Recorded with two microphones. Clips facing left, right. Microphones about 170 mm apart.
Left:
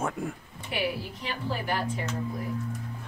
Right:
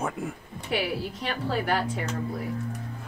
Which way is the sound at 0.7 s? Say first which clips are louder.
Right 2 dB; 70° right (ahead or behind).